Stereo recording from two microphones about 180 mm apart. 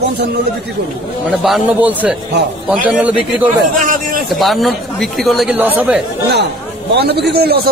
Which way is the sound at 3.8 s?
50° right (ahead or behind).